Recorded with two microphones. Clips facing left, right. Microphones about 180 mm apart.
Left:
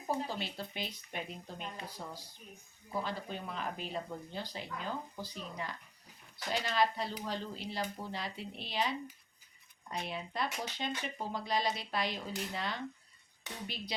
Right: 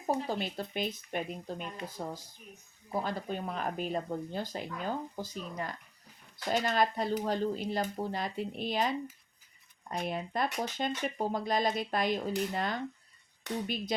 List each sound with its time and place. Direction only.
0.3 s speech: 50° right (ahead or behind)